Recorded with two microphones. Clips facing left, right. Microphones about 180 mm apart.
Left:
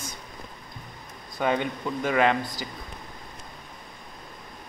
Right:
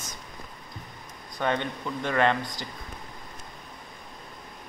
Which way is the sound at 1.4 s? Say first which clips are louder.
Left 2 dB; 10° left (ahead or behind).